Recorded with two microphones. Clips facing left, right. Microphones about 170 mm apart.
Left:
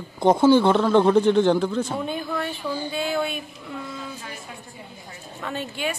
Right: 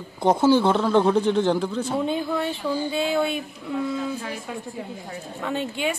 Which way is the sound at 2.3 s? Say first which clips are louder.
Right 3 dB; 20° right (ahead or behind).